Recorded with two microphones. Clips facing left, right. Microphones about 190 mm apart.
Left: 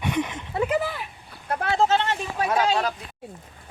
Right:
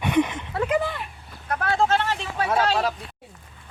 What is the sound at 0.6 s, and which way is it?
Speech, 5° left (ahead or behind).